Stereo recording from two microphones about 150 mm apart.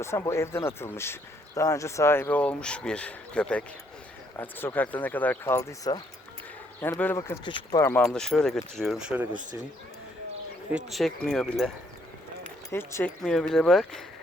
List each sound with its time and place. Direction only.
0.0 s speech: 20° left (ahead or behind)
7.2 s speech: 30° left (ahead or behind)
7.9 s speech: 5° left (ahead or behind)
10.7 s speech: 5° right (ahead or behind)
12.7 s speech: 15° left (ahead or behind)
13.2 s speech: 5° left (ahead or behind)